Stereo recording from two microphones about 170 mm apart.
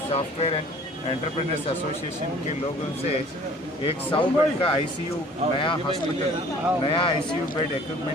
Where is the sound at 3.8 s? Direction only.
30° left (ahead or behind).